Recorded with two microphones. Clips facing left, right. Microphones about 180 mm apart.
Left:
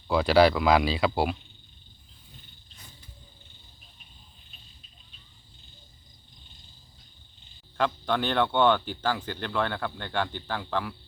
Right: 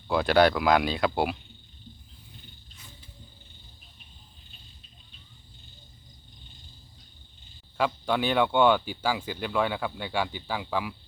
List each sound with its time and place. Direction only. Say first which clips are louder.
0.1 s speech: left 1 dB; centre (ahead or behind)
7.8 s speech: even; 10° right (ahead or behind)